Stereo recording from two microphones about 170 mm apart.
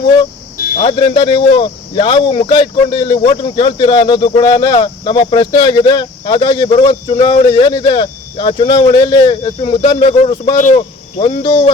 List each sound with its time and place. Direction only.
0.9 s speech: 25° left (ahead or behind)